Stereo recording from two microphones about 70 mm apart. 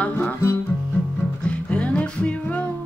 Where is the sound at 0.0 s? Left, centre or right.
Left.